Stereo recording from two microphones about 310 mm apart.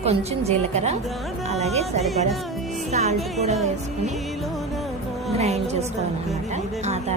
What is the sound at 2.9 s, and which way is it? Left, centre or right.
Speech, right.